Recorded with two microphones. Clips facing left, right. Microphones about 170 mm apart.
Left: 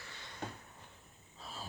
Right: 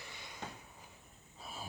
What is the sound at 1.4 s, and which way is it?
Gasp, 10° right (ahead or behind).